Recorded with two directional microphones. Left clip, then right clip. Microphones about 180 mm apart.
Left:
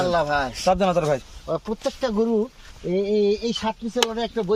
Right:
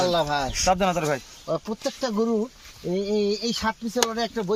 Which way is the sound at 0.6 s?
50° left (ahead or behind).